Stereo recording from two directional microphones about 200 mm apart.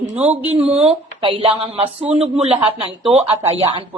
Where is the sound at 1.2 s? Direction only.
25° right (ahead or behind).